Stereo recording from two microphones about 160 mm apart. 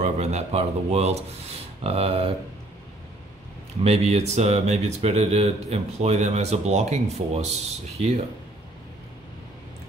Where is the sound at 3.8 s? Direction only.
40° right (ahead or behind).